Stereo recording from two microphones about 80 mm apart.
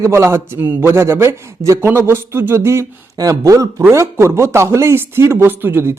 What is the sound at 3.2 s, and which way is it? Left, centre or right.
Speech, right.